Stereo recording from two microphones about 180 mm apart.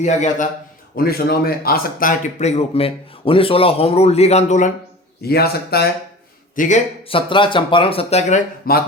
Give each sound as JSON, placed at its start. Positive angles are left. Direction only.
{"t": 0.0, "sound": "speech", "side_deg": 40}
{"t": 0.9, "sound": "speech", "side_deg": 60}
{"t": 5.2, "sound": "a man's voice", "side_deg": 60}
{"t": 6.6, "sound": "a man's voice", "side_deg": 40}
{"t": 7.1, "sound": "speech", "side_deg": 30}